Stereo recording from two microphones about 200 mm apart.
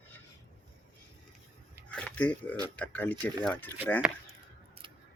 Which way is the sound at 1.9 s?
5° left (ahead or behind).